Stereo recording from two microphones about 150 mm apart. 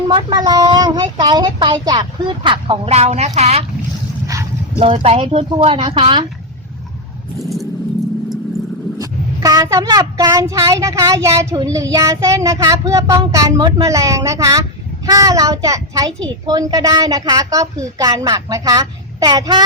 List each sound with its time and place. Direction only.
0.1 s speech: 30° right (ahead or behind); by 3.6 s 45° right (ahead or behind)
4.8 s speech: 40° right (ahead or behind)
9.0 s speech: 25° right (ahead or behind)